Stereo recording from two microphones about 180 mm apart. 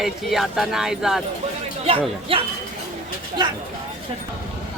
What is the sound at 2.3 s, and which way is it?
Speech, 30° right (ahead or behind).